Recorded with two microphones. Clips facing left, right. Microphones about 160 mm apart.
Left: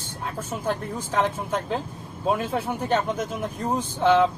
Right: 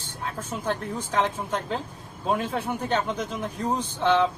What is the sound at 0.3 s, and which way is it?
Speech, 10° left (ahead or behind).